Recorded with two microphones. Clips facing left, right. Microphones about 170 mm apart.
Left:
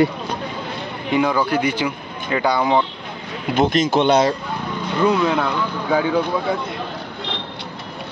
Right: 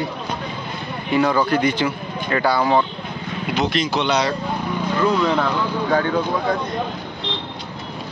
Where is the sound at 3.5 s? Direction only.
50° left (ahead or behind).